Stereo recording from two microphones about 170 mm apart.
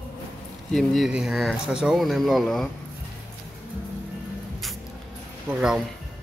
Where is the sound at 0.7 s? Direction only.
Centre (ahead or behind).